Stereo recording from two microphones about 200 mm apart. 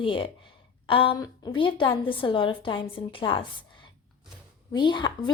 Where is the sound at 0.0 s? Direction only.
25° left (ahead or behind).